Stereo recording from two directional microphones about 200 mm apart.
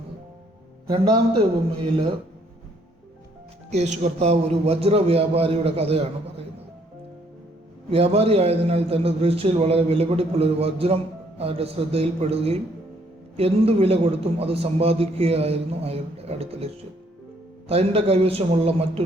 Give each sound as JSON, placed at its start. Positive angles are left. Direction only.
{"t": 0.9, "sound": "a man's voice", "side_deg": -25}
{"t": 3.7, "sound": "a man's voice", "side_deg": -35}
{"t": 7.9, "sound": "a man's voice", "side_deg": -30}